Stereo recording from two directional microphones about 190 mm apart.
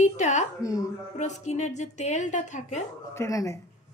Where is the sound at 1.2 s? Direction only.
40° left (ahead or behind).